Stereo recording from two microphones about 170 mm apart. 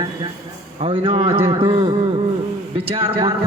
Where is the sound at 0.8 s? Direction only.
35° right (ahead or behind).